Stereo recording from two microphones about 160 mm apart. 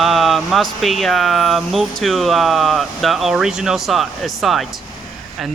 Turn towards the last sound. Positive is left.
turn(degrees=0)  # may be behind; listen again after turning